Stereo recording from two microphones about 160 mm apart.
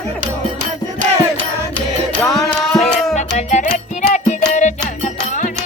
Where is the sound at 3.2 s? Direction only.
50° left (ahead or behind).